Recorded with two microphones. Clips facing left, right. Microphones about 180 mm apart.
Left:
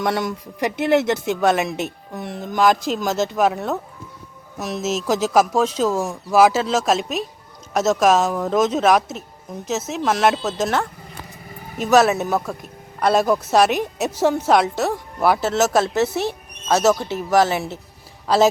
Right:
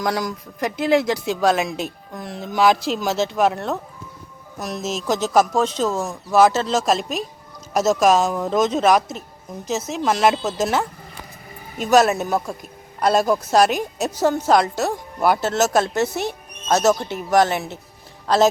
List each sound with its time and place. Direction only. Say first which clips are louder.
0.0 s a woman's voice: left 1 dB; centre (ahead or behind)
2.2 s speech: left 1 dB; 55° left (ahead or behind)
2.6 s a woman's voice: even; centre (ahead or behind)